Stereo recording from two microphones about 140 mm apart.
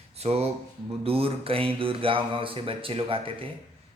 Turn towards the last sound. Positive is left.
turn(degrees=-40)  # may be behind; listen again after turning